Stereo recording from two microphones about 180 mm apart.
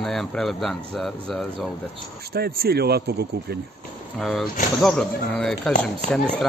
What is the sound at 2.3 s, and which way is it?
Speech, 60° right (ahead or behind).